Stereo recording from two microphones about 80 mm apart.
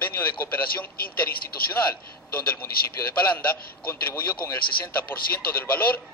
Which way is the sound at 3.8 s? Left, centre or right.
Left.